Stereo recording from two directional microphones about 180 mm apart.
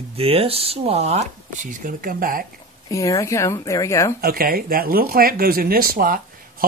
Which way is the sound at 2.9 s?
20° left (ahead or behind).